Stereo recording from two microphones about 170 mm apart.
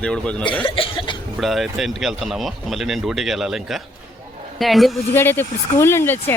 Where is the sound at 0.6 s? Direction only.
30° left (ahead or behind).